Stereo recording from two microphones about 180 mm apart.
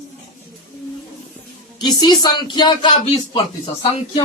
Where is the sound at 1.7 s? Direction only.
25° left (ahead or behind).